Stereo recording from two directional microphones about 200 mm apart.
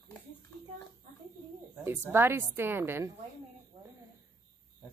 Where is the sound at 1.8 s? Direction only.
10° right (ahead or behind).